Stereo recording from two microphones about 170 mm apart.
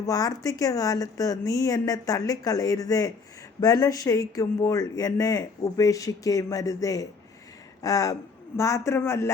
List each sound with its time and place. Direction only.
0.0 s a man's voice: 20° left (ahead or behind)